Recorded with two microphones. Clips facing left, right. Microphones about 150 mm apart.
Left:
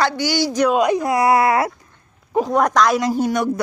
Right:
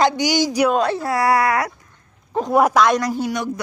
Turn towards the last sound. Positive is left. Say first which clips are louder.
# left 4 dB
turn(degrees=50)  # may be behind; listen again after turning